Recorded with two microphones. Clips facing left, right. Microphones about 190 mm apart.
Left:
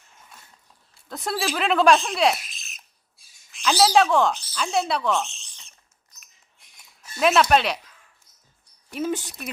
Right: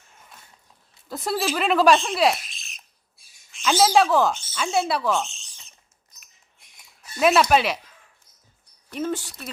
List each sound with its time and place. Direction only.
1.0 s speech: centre (ahead or behind)
7.2 s speech: centre (ahead or behind)
8.9 s speech: 5° left (ahead or behind)
9.1 s speech: 20° left (ahead or behind)